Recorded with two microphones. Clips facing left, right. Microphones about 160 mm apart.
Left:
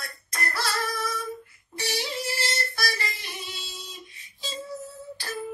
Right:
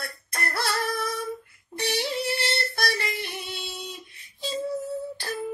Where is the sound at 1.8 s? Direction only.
60° right (ahead or behind).